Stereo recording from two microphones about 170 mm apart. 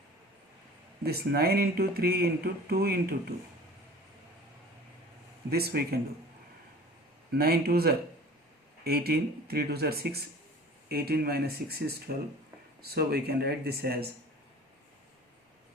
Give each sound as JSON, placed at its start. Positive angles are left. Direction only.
{"t": 1.0, "sound": "speech", "side_deg": -70}
{"t": 5.5, "sound": "speech", "side_deg": -70}
{"t": 7.3, "sound": "speech", "side_deg": -65}